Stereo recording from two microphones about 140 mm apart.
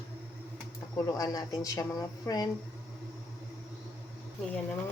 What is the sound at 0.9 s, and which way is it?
Speech, 25° left (ahead or behind).